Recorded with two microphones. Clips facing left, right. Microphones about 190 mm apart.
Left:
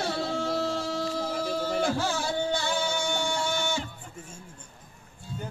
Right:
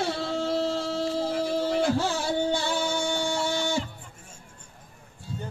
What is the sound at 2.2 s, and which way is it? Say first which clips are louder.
Music: right 2 dB; 30° right (ahead or behind).